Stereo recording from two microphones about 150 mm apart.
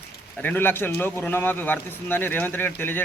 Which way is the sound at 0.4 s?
15° left (ahead or behind).